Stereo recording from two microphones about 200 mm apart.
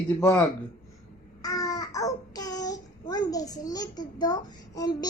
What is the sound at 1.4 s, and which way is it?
Babbling, 15° left (ahead or behind).